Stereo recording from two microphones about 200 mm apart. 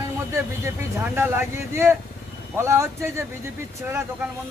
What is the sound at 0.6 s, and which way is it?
Speech, 10° right (ahead or behind).